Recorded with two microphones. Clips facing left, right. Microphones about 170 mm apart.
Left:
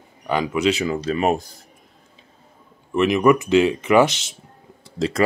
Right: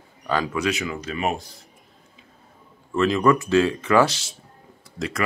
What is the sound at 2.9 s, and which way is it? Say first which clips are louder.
Speech: left 3 dB; 20° left (ahead or behind).